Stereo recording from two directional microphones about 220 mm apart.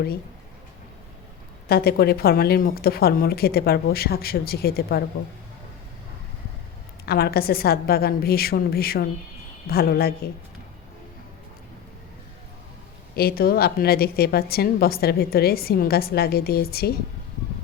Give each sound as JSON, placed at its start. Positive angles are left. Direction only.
{"t": 1.6, "sound": "a woman's voice", "side_deg": 45}
{"t": 7.0, "sound": "a woman's voice", "side_deg": 45}
{"t": 13.1, "sound": "a woman's voice", "side_deg": 45}